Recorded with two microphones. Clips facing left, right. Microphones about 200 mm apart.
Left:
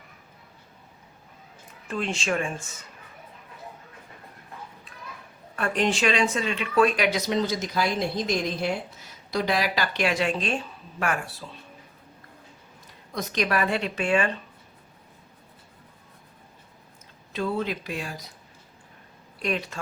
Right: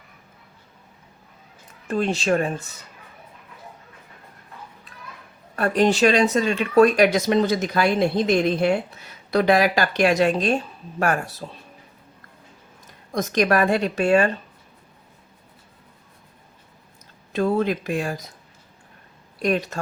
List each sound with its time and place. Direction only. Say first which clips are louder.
1.9 s speech: right 7 dB; 40° right (ahead or behind)
5.5 s speech: right 6 dB; 40° right (ahead or behind)
13.1 s speech: right 6 dB; 45° right (ahead or behind)
17.3 s speech: right 7 dB; 50° right (ahead or behind)
19.4 s speech: right 6 dB; 45° right (ahead or behind)